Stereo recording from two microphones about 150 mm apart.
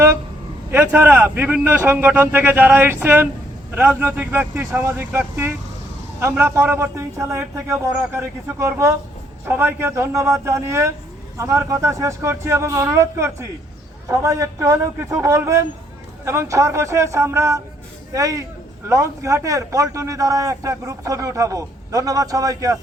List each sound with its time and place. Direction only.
0.7 s a man's voice: 10° right (ahead or behind)